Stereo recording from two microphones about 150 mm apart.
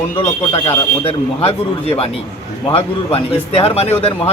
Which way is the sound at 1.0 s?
40° left (ahead or behind).